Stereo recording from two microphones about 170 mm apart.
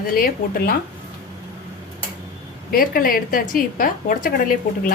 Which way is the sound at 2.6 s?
55° left (ahead or behind).